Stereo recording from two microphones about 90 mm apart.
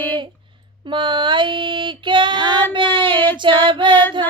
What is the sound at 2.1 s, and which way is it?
Female singing, 60° right (ahead or behind).